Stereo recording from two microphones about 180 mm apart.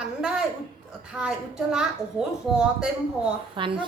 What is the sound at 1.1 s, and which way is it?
Speech, 5° right (ahead or behind).